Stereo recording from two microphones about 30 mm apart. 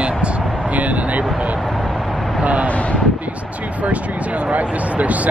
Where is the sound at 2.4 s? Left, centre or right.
Right.